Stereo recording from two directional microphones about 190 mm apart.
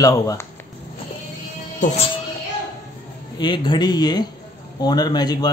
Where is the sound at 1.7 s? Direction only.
35° left (ahead or behind).